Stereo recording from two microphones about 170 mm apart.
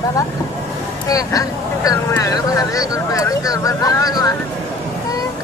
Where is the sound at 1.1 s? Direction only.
20° left (ahead or behind).